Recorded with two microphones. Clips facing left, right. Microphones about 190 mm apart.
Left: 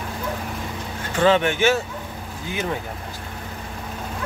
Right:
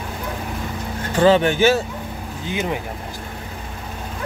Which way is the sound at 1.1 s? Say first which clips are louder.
Right 3 dB; 35° right (ahead or behind).